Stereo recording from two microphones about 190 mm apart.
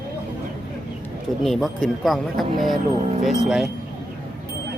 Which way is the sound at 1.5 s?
Centre (ahead or behind).